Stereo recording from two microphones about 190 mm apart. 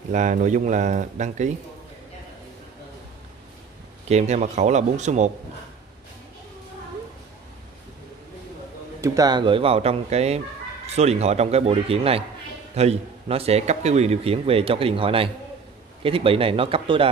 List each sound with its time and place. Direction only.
0.1 s a man's voice: 40° right (ahead or behind)
4.1 s a man's voice: 35° right (ahead or behind)
9.0 s a man's voice: 20° right (ahead or behind)